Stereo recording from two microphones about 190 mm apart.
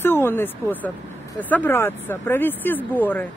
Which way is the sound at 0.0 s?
10° left (ahead or behind).